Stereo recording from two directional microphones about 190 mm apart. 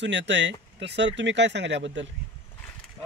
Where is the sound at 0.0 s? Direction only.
65° right (ahead or behind).